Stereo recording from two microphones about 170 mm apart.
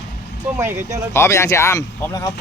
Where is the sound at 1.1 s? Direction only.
15° left (ahead or behind).